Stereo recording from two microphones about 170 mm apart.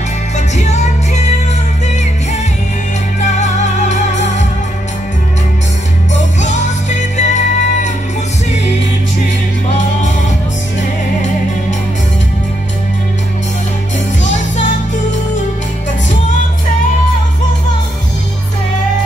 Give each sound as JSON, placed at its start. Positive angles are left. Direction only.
{"t": 0.6, "sound": "music", "side_deg": 40}
{"t": 3.3, "sound": "music", "side_deg": 45}
{"t": 6.4, "sound": "music", "side_deg": 45}